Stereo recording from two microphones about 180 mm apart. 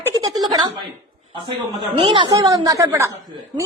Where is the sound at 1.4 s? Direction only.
25° right (ahead or behind).